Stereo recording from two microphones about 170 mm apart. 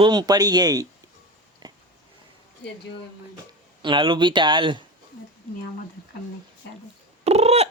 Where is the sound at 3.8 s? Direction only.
30° right (ahead or behind).